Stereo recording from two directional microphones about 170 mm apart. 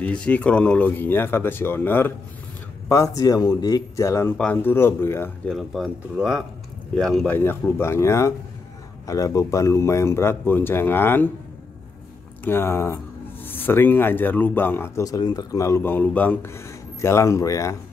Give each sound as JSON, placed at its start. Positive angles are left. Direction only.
{"t": 0.0, "sound": "speech", "side_deg": 5}
{"t": 5.5, "sound": "speech", "side_deg": 0}
{"t": 12.4, "sound": "speech", "side_deg": 15}